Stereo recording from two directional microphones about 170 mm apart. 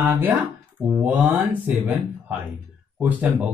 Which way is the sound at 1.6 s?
10° right (ahead or behind).